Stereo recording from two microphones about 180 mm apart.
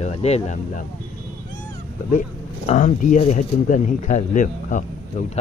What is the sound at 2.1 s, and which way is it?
Speech, 45° left (ahead or behind).